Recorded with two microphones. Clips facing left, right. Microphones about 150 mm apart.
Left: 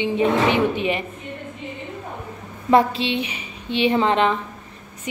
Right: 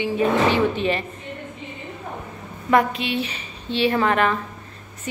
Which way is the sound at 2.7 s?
30° left (ahead or behind).